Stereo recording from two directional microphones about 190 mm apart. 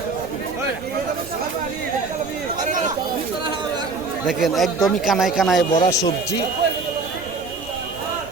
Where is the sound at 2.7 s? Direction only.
40° right (ahead or behind).